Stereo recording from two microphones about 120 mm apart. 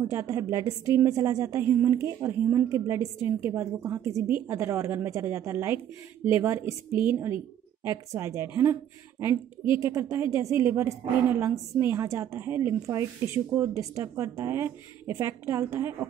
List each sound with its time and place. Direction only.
0.0 s a woman's voice: 25° right (ahead or behind)
9.8 s a woman's voice: 25° right (ahead or behind)